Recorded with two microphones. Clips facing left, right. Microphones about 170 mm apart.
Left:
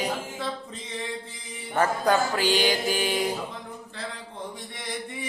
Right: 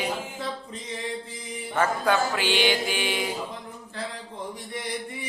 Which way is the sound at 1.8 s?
40° left (ahead or behind).